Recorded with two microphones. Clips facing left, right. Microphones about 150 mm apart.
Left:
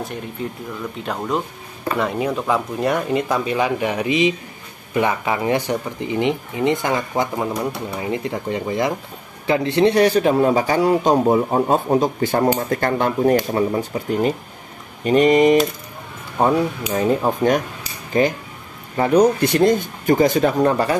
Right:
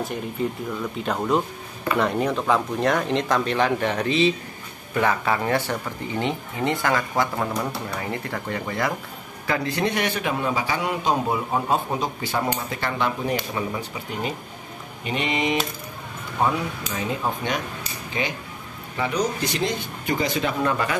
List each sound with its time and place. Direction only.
0.0 s a man's voice: centre (ahead or behind); by 15.5 s 45° left (ahead or behind)
16.9 s a man's voice: 40° left (ahead or behind)